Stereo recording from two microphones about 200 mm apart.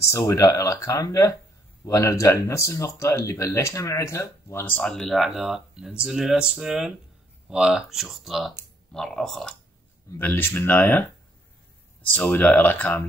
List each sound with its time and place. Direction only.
0.1 s speech: 15° left (ahead or behind)
12.1 s speech: 10° left (ahead or behind)